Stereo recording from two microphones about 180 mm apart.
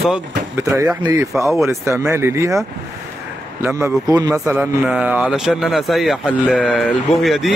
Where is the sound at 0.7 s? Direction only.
15° right (ahead or behind).